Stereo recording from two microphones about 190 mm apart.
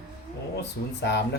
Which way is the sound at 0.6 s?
65° left (ahead or behind).